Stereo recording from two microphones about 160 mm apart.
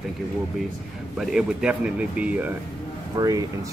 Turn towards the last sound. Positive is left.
turn(degrees=-20)  # may be behind; listen again after turning